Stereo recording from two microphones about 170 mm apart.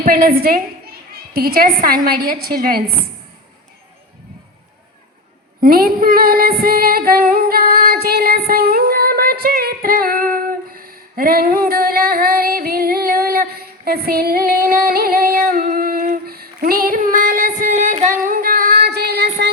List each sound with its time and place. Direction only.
0.0 s a woman's voice: 60° right (ahead or behind)
5.5 s female singing: 60° right (ahead or behind); by 19.5 s 80° right